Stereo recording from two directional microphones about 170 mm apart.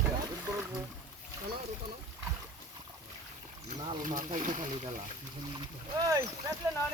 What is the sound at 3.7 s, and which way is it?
Speech, 50° right (ahead or behind).